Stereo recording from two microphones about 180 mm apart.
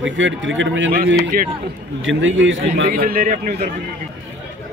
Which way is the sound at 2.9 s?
55° right (ahead or behind).